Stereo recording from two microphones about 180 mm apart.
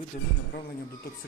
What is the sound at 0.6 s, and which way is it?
Speech, 55° left (ahead or behind).